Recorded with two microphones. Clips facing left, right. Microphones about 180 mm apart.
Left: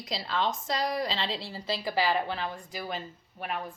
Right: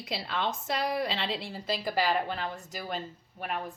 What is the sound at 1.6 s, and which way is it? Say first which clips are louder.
A woman's voice: left 1 dB; 50° right (ahead or behind).